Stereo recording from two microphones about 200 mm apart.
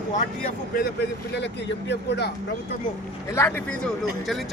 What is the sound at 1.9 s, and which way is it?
Speech, 55° left (ahead or behind).